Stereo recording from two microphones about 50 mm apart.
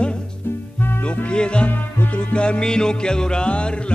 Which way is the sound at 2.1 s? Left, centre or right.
Left.